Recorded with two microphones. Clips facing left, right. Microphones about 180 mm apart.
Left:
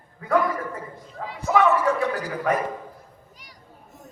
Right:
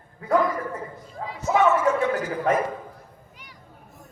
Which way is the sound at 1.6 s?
35° left (ahead or behind).